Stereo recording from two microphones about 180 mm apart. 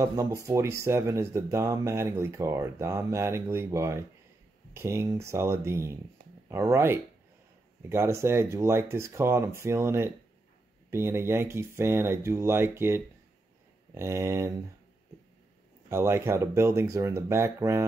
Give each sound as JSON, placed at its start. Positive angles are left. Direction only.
{"t": 0.0, "sound": "speech", "side_deg": -20}
{"t": 15.9, "sound": "speech", "side_deg": -15}